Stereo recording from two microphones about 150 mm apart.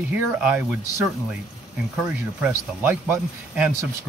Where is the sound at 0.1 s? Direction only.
10° right (ahead or behind).